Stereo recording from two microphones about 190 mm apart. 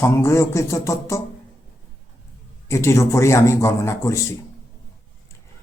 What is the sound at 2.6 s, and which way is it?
A man's voice, 15° left (ahead or behind).